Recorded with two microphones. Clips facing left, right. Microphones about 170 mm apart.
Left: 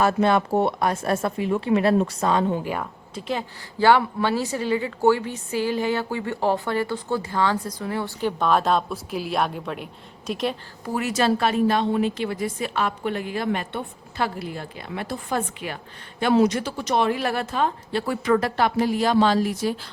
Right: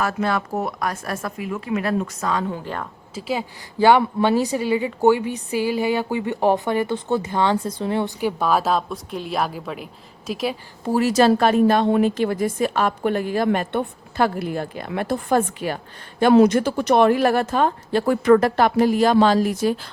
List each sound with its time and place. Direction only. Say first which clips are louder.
0.0 s a woman's voice: left 3 dB; 25° left (ahead or behind)
3.2 s a woman's voice: right 2 dB; 5° right (ahead or behind)
3.8 s speech: right 3 dB; 15° right (ahead or behind)
8.2 s a woman's voice: left 2 dB; 5° right (ahead or behind)
10.8 s a woman's voice: right 6 dB; 35° right (ahead or behind)